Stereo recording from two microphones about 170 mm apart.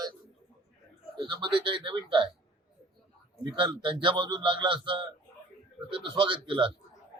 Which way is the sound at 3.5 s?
30° right (ahead or behind).